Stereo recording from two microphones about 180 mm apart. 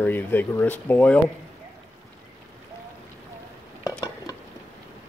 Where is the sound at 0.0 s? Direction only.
10° left (ahead or behind).